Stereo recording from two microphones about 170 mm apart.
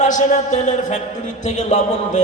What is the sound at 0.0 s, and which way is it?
A man's voice, 50° left (ahead or behind).